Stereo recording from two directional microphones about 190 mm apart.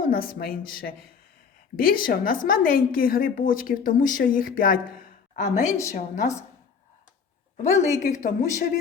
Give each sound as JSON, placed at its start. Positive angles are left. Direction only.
{"t": 0.1, "sound": "a woman's voice", "side_deg": 50}
{"t": 7.5, "sound": "a woman's voice", "side_deg": 35}